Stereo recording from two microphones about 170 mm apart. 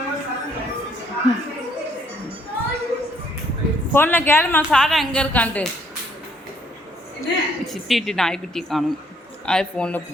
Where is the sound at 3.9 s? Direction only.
10° left (ahead or behind).